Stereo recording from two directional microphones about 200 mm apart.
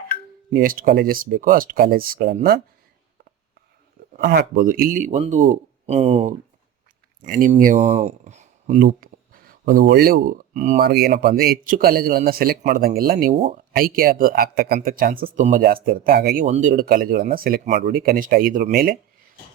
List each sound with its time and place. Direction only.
0.5 s speech: 45° right (ahead or behind)
4.2 s speech: 55° right (ahead or behind); by 6.3 s 30° right (ahead or behind)
7.3 s speech: 45° right (ahead or behind)
10.8 s speech: 50° right (ahead or behind)